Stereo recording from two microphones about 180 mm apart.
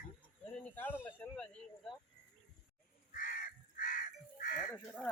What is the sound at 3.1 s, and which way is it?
Crow, 50° left (ahead or behind).